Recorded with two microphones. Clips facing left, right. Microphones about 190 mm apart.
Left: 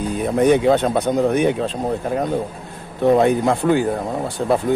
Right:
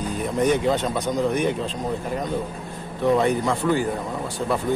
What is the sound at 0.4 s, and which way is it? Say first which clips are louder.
Speech: left 6 dB; 60° left (ahead or behind).